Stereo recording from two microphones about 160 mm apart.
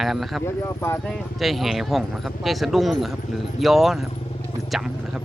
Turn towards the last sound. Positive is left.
turn(degrees=-5)  # may be behind; listen again after turning